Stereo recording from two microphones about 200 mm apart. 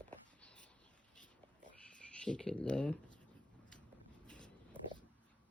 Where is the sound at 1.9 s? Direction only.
5° left (ahead or behind).